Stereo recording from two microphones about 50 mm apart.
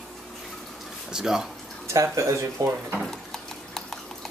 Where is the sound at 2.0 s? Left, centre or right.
Right.